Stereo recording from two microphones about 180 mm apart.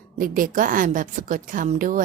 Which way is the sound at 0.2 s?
50° right (ahead or behind).